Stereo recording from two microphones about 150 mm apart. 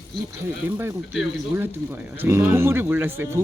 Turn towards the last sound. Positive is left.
turn(degrees=-15)  # may be behind; listen again after turning